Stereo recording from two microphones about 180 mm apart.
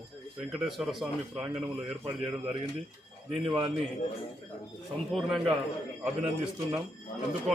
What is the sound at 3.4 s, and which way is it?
Speech, 25° right (ahead or behind).